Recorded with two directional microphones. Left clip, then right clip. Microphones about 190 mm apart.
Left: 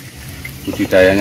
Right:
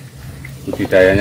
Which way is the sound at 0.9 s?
5° left (ahead or behind).